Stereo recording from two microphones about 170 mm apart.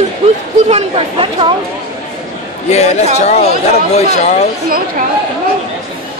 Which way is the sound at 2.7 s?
40° left (ahead or behind).